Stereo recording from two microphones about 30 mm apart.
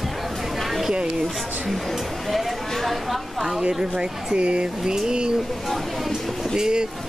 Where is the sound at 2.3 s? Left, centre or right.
Centre.